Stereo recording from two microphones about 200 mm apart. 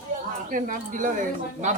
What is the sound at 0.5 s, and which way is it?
Speech, 40° right (ahead or behind).